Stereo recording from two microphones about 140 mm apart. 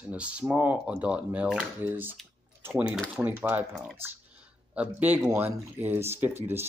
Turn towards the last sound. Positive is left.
turn(degrees=-15)  # may be behind; listen again after turning